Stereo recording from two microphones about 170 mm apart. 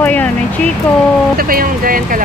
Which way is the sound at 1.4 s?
60° right (ahead or behind).